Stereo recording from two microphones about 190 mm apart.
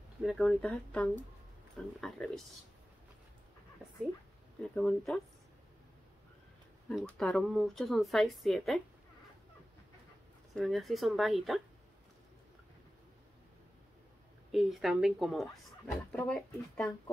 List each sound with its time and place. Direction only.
0.2 s speech: centre (ahead or behind)
4.6 s speech: 5° left (ahead or behind)
6.9 s speech: 5° left (ahead or behind)
10.5 s speech: centre (ahead or behind)
14.5 s speech: centre (ahead or behind)